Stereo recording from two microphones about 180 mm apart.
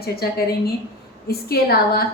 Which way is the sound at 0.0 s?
60° left (ahead or behind).